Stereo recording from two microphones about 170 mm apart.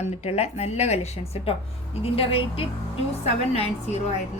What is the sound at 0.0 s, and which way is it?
A woman's voice, 40° left (ahead or behind).